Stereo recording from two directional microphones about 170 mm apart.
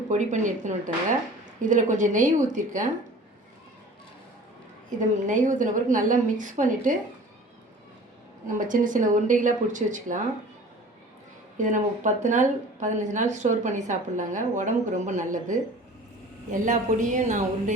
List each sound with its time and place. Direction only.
0.1 s a woman's voice: 45° right (ahead or behind)
4.9 s a woman's voice: 45° right (ahead or behind)
8.5 s a woman's voice: 50° right (ahead or behind)
11.5 s a woman's voice: 45° right (ahead or behind)